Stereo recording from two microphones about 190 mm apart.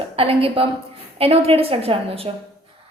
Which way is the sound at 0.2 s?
30° right (ahead or behind).